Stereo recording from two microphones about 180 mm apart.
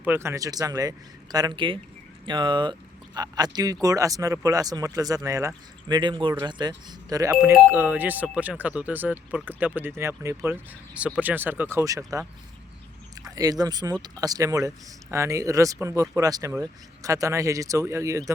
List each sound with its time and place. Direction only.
0.0 s speech: 10° right (ahead or behind)
13.2 s speech: 20° right (ahead or behind)